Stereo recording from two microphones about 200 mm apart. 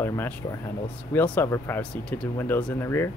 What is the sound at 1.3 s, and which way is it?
Speech, 15° left (ahead or behind).